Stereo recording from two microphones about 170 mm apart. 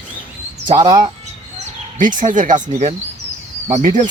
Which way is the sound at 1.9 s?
50° right (ahead or behind).